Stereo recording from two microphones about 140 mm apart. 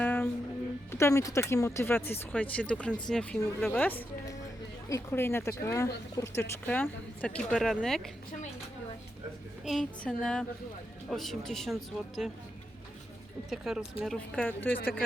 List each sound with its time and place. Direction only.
0.0 s music: 15° left (ahead or behind)
0.9 s speech: 20° left (ahead or behind); by 8.1 s 5° left (ahead or behind)
9.6 s speech: centre (ahead or behind)
13.5 s speech: centre (ahead or behind)
14.4 s speech: 15° left (ahead or behind)